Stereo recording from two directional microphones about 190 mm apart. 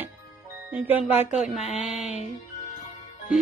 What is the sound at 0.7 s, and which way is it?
Speech, 10° right (ahead or behind).